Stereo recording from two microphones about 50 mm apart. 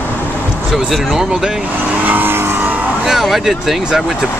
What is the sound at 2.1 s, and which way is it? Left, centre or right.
Vehicle, right.